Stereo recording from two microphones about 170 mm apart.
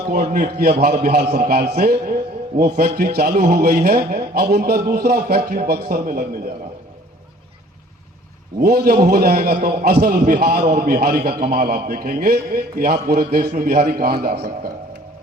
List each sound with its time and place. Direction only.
0.1 s a man's voice: 65° right (ahead or behind)
8.6 s a man's voice: 65° right (ahead or behind)